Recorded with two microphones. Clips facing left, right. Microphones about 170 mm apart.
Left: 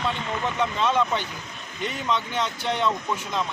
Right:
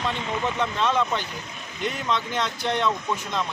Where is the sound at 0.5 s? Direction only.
5° left (ahead or behind).